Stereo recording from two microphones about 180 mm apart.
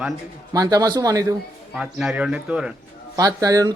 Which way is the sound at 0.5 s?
20° right (ahead or behind).